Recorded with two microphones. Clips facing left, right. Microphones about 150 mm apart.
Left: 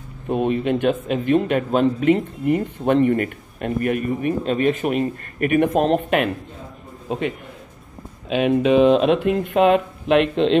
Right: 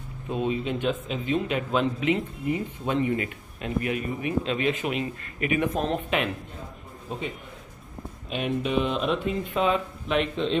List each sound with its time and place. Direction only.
0.3 s speech: 60° left (ahead or behind)
5.7 s speech: 70° left (ahead or behind); by 6.3 s 55° left (ahead or behind)
7.1 s a man's voice: 70° left (ahead or behind)
8.3 s speech: 90° left